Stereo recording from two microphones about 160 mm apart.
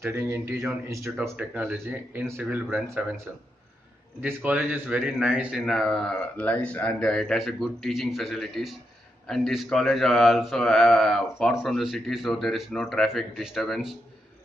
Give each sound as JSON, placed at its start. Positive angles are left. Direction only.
{"t": 0.0, "sound": "speech", "side_deg": -20}
{"t": 1.4, "sound": "speech", "side_deg": -5}